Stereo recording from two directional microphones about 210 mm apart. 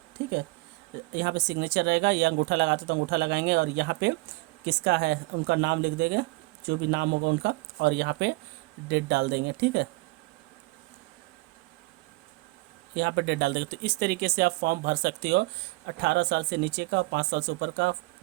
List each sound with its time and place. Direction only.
1.1 s speech: 55° right (ahead or behind)
12.9 s speech: 55° right (ahead or behind)